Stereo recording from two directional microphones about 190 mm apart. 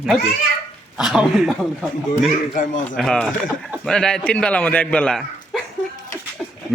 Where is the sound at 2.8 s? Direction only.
5° left (ahead or behind).